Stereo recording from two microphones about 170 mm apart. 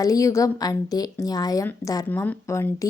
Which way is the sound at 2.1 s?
10° left (ahead or behind).